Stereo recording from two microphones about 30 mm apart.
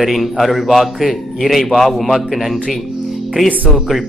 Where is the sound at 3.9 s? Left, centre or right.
Centre.